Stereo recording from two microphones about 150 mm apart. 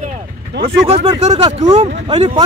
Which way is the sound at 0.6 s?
45° right (ahead or behind).